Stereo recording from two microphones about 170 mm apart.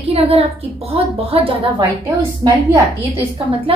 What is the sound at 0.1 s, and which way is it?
A woman's voice, 35° right (ahead or behind).